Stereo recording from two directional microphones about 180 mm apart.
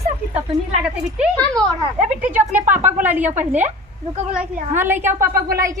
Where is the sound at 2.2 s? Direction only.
10° right (ahead or behind).